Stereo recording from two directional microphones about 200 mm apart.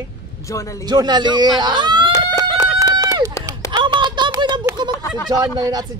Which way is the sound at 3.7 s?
20° right (ahead or behind).